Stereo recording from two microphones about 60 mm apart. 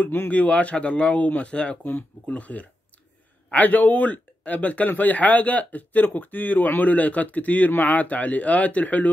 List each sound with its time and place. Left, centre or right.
0.0 s a man's voice: left